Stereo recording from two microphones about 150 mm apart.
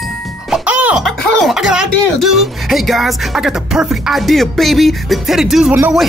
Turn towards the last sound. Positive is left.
turn(degrees=-5)  # may be behind; listen again after turning